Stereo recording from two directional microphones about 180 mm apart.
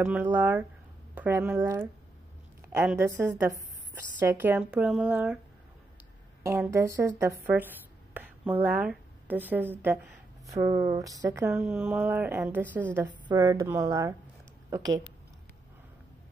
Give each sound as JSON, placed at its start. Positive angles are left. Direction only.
{"t": 0.0, "sound": "speech", "side_deg": -10}
{"t": 3.0, "sound": "speech", "side_deg": -15}
{"t": 6.4, "sound": "speech", "side_deg": -15}
{"t": 11.5, "sound": "speech", "side_deg": -5}